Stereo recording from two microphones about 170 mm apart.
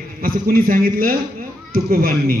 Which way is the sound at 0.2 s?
55° right (ahead or behind).